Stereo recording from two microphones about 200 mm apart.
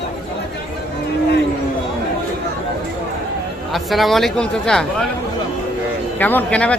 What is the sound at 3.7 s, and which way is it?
Speech, centre (ahead or behind).